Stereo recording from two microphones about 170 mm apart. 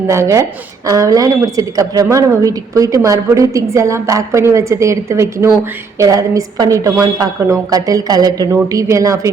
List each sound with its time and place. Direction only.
0.1 s a woman's voice: 15° right (ahead or behind)